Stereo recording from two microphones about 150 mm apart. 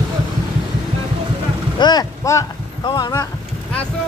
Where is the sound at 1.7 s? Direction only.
30° left (ahead or behind).